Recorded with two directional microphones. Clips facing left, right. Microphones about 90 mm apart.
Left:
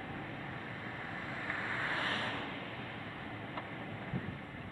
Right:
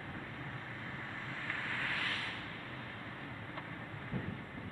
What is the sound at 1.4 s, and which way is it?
Vehicle, 15° left (ahead or behind).